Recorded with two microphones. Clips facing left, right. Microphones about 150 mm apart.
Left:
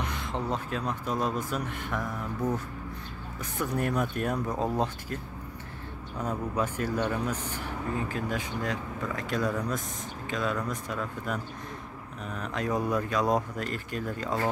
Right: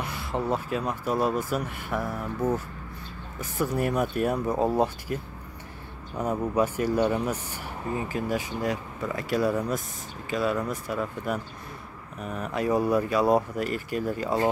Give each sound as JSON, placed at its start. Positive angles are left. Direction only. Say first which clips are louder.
{"t": 0.0, "sound": "speech", "louder": "right 3 dB", "side_deg": -5}
{"t": 3.3, "sound": "speech", "louder": "right 4 dB", "side_deg": -5}